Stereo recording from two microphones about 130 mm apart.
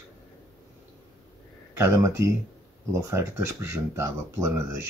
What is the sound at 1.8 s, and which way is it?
Speech, 20° right (ahead or behind).